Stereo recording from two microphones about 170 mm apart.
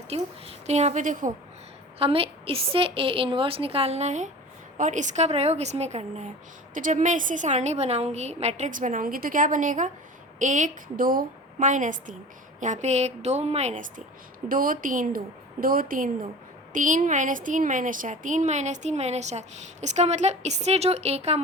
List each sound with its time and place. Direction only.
0.1 s a woman's voice: 40° right (ahead or behind)
2.0 s a woman's voice: 35° right (ahead or behind)
14.4 s a woman's voice: 55° right (ahead or behind); by 21.4 s 40° right (ahead or behind)